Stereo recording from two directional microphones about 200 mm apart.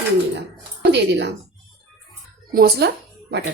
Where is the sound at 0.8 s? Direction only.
60° right (ahead or behind).